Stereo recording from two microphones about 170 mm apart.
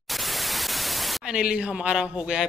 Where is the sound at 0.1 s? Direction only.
Centre (ahead or behind).